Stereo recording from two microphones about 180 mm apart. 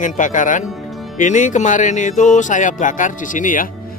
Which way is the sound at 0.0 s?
45° left (ahead or behind).